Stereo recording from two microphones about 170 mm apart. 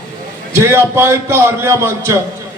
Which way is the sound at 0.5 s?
15° right (ahead or behind).